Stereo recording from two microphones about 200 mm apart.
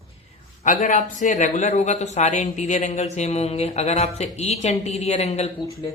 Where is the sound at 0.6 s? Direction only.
40° left (ahead or behind).